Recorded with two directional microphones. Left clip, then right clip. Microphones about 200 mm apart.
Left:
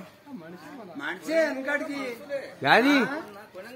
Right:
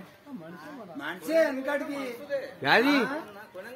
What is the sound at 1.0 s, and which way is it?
Speech, 60° right (ahead or behind).